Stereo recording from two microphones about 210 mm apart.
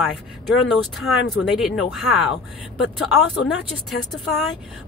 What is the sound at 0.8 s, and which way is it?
Speech, centre (ahead or behind).